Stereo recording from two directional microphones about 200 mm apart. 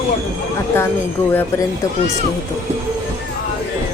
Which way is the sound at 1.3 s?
10° left (ahead or behind).